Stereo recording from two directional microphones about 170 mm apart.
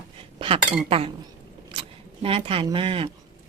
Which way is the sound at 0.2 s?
35° right (ahead or behind).